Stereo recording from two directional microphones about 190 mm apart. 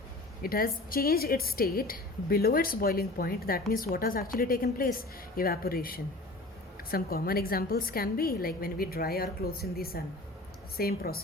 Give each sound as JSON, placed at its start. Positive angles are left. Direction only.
{"t": 0.4, "sound": "a woman's voice", "side_deg": 50}